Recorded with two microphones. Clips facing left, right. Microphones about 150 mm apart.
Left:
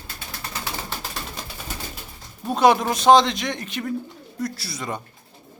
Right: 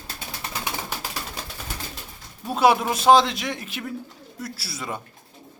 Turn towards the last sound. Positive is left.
turn(degrees=-5)  # may be behind; listen again after turning